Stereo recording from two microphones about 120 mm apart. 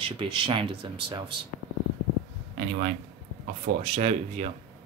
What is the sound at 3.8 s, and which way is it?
Speech, 55° right (ahead or behind).